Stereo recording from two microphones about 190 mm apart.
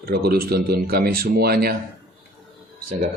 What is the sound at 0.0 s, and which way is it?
A man's voice, 55° right (ahead or behind).